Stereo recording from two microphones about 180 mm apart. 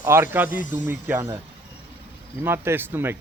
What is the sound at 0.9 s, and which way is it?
Speech, 10° right (ahead or behind).